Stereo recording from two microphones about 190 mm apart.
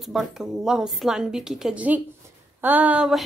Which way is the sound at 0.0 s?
Centre (ahead or behind).